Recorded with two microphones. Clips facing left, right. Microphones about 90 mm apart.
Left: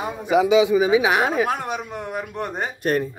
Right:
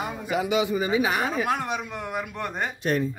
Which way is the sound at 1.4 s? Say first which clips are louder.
Left 2 dB; 40° left (ahead or behind).